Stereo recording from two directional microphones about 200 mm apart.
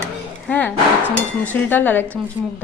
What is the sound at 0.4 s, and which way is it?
Speech, 5° left (ahead or behind).